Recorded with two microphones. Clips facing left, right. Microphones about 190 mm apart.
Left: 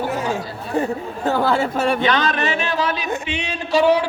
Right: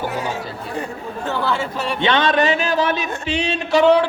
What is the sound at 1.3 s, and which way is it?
Chatter, 40° left (ahead or behind).